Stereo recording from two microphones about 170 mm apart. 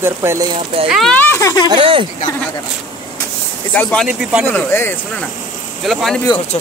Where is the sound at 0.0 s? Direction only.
15° right (ahead or behind).